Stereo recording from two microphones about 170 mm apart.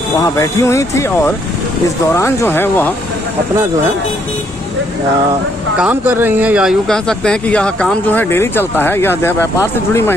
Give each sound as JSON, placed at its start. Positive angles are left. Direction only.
{"t": 0.4, "sound": "speech", "side_deg": 20}
{"t": 5.8, "sound": "speech", "side_deg": -10}